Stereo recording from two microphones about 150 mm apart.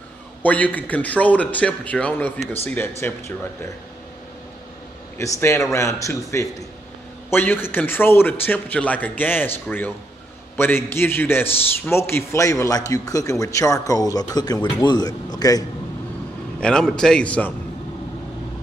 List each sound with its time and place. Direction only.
0.4 s a man's voice: 10° left (ahead or behind)
5.2 s a man's voice: 15° left (ahead or behind)
16.5 s a man's voice: 5° left (ahead or behind)